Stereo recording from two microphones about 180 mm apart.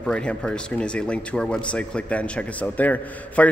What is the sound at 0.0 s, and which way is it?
Speech, 5° left (ahead or behind).